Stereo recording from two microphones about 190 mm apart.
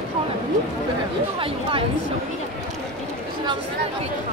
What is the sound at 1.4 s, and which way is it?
Speech, 30° right (ahead or behind).